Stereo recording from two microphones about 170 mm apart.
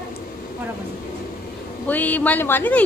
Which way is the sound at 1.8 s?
10° left (ahead or behind).